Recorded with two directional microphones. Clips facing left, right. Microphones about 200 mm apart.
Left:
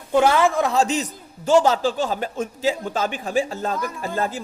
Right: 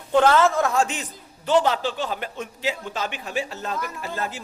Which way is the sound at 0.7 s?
35° left (ahead or behind).